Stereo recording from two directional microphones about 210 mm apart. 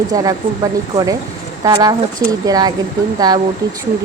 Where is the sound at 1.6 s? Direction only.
20° right (ahead or behind).